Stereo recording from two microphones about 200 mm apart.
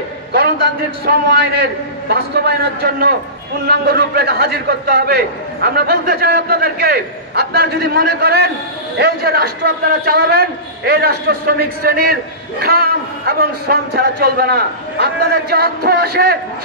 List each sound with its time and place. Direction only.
1.0 s a man's voice: 50° right (ahead or behind)